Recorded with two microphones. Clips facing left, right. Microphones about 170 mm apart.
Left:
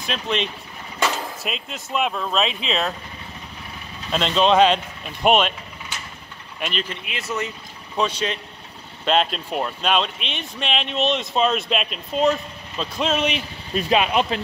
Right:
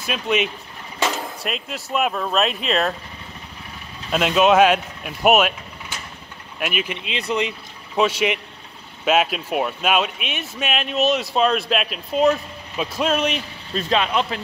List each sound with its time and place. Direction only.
0.0 s speech: 5° right (ahead or behind)
4.1 s speech: 5° right (ahead or behind)
6.6 s speech: 10° right (ahead or behind)
13.7 s speech: 15° left (ahead or behind)